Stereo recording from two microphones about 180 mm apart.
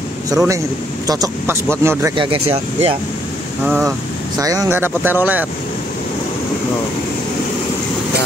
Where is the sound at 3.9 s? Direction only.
20° right (ahead or behind).